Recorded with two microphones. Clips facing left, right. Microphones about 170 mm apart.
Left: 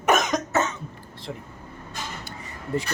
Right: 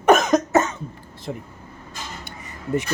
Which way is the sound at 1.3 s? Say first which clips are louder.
Right 5 dB; 30° right (ahead or behind).